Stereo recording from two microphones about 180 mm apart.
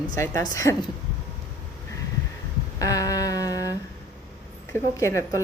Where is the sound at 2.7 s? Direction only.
20° left (ahead or behind).